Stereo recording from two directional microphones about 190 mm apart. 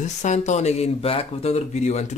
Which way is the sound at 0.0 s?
40° left (ahead or behind).